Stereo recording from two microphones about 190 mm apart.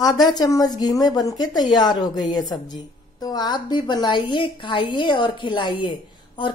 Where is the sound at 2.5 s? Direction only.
20° left (ahead or behind).